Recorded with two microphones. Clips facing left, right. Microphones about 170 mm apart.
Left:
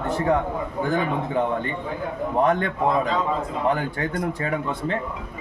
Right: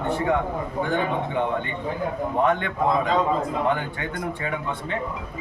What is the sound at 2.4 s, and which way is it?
Speech, 35° left (ahead or behind).